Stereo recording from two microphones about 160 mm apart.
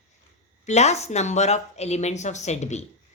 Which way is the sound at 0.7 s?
45° left (ahead or behind).